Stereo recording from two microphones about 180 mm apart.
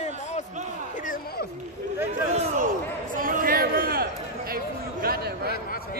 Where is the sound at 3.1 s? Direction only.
50° right (ahead or behind).